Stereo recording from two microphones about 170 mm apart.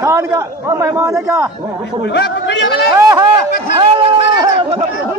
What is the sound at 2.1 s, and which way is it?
Speech, 75° left (ahead or behind).